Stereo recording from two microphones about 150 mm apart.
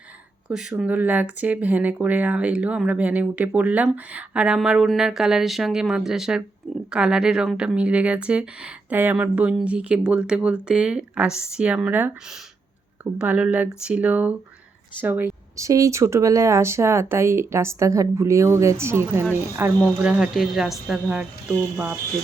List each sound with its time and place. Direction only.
0.4 s speech: 5° right (ahead or behind)
13.1 s speech: 10° right (ahead or behind)
20.0 s speech: 5° right (ahead or behind)